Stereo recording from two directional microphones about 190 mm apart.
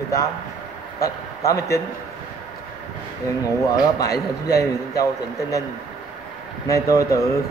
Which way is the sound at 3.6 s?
20° left (ahead or behind).